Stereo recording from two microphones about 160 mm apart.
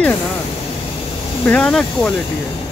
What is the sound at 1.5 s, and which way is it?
Speech, 5° left (ahead or behind).